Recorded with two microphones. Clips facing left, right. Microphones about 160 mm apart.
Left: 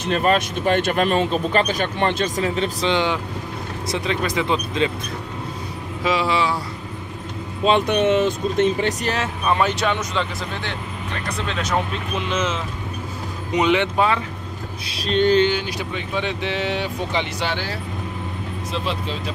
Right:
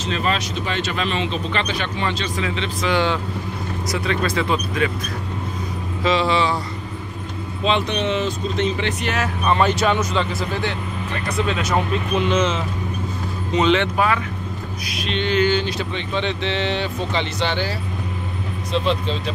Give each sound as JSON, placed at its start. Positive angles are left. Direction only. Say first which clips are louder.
{"t": 0.0, "sound": "speech", "louder": "left 4 dB", "side_deg": 50}
{"t": 2.9, "sound": "speech", "louder": "right 1 dB", "side_deg": 15}
{"t": 6.0, "sound": "speech", "louder": "right 2 dB", "side_deg": 5}
{"t": 7.6, "sound": "speech", "louder": "left 4 dB", "side_deg": 50}
{"t": 9.5, "sound": "speech", "louder": "right 2 dB", "side_deg": 0}
{"t": 13.5, "sound": "speech", "louder": "right 1 dB", "side_deg": 15}
{"t": 13.9, "sound": "speech", "louder": "even", "side_deg": 25}
{"t": 14.9, "sound": "a sound", "louder": "left 6 dB", "side_deg": 35}
{"t": 15.5, "sound": "speech", "louder": "right 3 dB", "side_deg": 10}